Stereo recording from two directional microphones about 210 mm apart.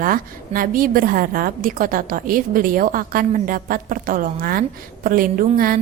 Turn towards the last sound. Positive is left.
turn(degrees=-45)  # may be behind; listen again after turning